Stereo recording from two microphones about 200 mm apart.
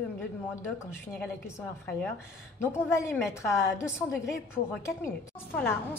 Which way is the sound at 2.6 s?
10° left (ahead or behind).